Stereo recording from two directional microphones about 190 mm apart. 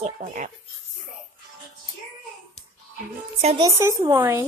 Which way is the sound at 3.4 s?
30° right (ahead or behind).